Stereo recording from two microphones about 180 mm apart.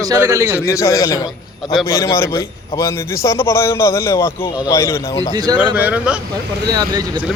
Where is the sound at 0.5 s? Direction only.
15° left (ahead or behind).